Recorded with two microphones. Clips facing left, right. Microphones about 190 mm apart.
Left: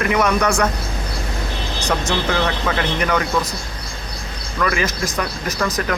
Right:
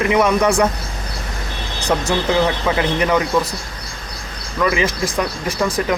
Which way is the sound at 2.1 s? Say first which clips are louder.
Right 5 dB; 15° right (ahead or behind).